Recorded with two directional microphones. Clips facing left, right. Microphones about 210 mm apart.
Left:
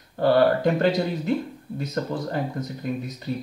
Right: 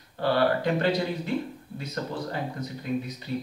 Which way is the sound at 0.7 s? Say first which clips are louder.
Left 3 dB; 45° left (ahead or behind).